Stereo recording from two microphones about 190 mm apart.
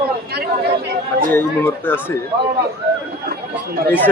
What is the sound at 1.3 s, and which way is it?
Speech, 10° left (ahead or behind).